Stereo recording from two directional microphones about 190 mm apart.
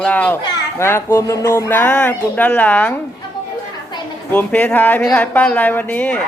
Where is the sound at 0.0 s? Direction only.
5° left (ahead or behind).